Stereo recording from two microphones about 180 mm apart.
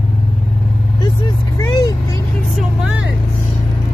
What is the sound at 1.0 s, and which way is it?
Vehicle, 25° left (ahead or behind).